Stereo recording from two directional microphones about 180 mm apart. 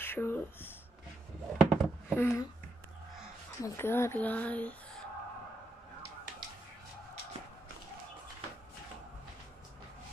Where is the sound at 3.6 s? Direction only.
15° left (ahead or behind).